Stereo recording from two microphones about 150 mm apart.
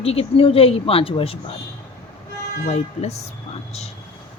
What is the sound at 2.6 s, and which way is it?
Speech, 45° left (ahead or behind).